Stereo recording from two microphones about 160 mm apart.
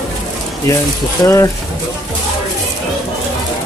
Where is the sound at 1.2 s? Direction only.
20° left (ahead or behind).